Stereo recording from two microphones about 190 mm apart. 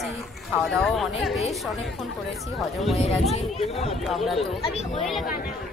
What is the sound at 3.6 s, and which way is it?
Speech, 30° left (ahead or behind).